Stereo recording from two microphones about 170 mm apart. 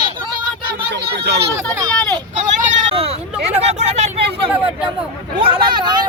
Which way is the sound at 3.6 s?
40° right (ahead or behind).